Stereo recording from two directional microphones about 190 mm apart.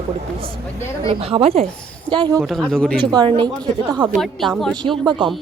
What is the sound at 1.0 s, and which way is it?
Speech, 30° right (ahead or behind).